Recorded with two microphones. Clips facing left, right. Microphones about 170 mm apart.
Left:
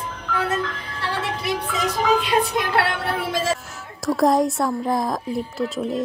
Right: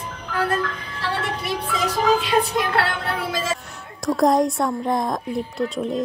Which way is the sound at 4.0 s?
Centre (ahead or behind).